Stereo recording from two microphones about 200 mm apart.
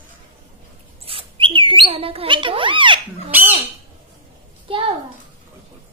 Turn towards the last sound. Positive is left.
turn(degrees=-25)  # may be behind; listen again after turning